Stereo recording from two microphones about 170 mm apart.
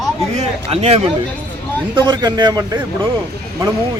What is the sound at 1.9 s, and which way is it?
Speech, 25° right (ahead or behind).